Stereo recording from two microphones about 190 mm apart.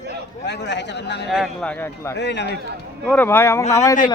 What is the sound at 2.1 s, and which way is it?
Speech, 65° left (ahead or behind).